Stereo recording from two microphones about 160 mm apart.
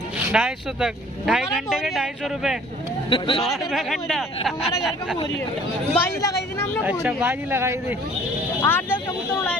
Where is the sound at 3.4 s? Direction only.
Centre (ahead or behind).